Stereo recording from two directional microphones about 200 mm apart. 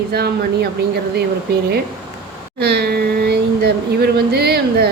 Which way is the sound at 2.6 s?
55° right (ahead or behind).